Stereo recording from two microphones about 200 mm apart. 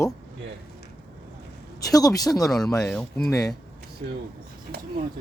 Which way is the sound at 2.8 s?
5° left (ahead or behind).